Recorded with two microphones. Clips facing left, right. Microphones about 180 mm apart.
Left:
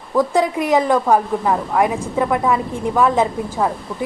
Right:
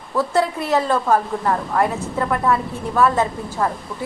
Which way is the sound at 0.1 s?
15° left (ahead or behind).